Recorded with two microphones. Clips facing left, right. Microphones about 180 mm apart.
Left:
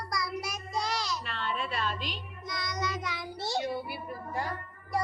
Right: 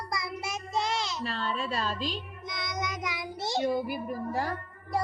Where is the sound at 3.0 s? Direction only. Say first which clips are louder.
Right 2 dB; 15° right (ahead or behind).